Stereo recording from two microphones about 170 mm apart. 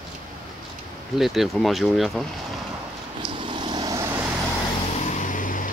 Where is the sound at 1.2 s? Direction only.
Centre (ahead or behind).